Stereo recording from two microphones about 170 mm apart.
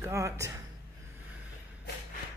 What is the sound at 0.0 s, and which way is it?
Speech, 15° right (ahead or behind).